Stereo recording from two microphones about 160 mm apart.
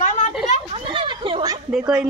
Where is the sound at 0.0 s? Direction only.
50° left (ahead or behind).